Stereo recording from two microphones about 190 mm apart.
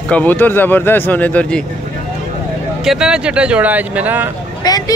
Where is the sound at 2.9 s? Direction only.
5° right (ahead or behind).